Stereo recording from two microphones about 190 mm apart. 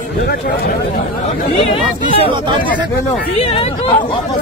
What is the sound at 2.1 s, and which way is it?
Speech, 30° right (ahead or behind).